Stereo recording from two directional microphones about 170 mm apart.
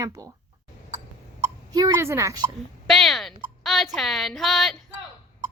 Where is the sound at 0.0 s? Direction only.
20° right (ahead or behind).